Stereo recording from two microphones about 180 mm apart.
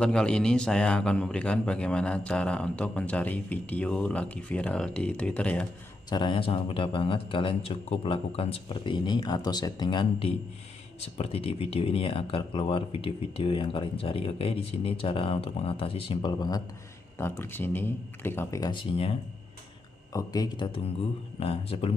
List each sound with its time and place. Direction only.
0.0 s a man's voice: 5° left (ahead or behind)
6.0 s a man's voice: 25° left (ahead or behind)
18.7 s speech: 30° left (ahead or behind)
20.1 s a man's voice: 20° left (ahead or behind)